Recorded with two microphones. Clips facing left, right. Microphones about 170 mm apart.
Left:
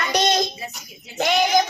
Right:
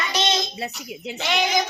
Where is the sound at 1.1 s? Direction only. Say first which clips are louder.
Left 5 dB; 45° left (ahead or behind).